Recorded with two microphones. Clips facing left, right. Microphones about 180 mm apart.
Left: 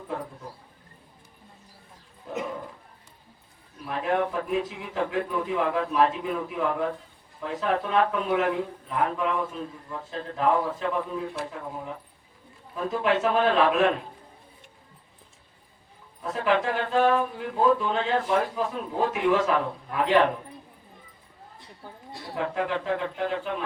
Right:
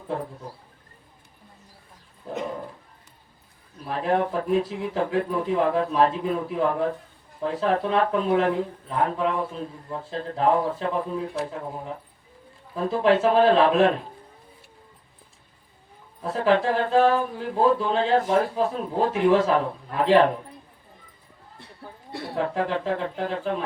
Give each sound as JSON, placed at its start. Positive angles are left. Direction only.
{"t": 2.3, "sound": "dog", "side_deg": -35}
{"t": 3.8, "sound": "speech", "side_deg": -35}
{"t": 12.7, "sound": "speech", "side_deg": -35}
{"t": 16.2, "sound": "speech", "side_deg": -35}
{"t": 22.4, "sound": "speech", "side_deg": -35}